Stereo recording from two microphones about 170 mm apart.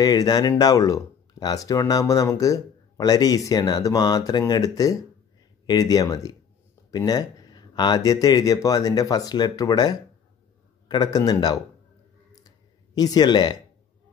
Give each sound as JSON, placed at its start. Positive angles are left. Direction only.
{"t": 0.0, "sound": "speech", "side_deg": 25}
{"t": 12.3, "sound": "clicking", "side_deg": 20}